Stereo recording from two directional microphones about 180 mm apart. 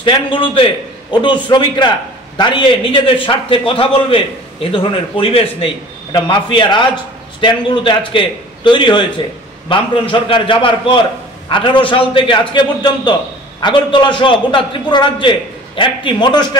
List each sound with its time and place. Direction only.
0.0 s a man's voice: 30° left (ahead or behind)